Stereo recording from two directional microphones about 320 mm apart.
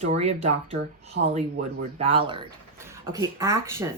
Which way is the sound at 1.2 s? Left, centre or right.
Right.